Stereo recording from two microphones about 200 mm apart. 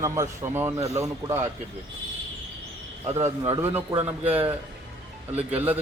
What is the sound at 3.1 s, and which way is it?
A man's voice, 15° right (ahead or behind).